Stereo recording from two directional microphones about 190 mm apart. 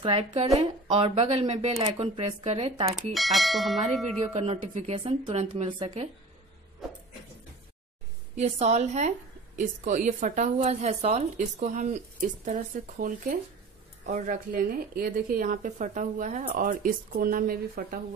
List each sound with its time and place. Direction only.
0.0 s a woman's voice: 30° right (ahead or behind)
3.1 s speech: centre (ahead or behind)
4.2 s a woman's voice: 35° right (ahead or behind)
5.5 s speech: 25° right (ahead or behind)
8.4 s a woman's voice: 35° right (ahead or behind)